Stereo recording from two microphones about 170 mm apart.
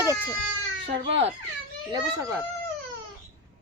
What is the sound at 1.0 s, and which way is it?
Speech, 40° right (ahead or behind).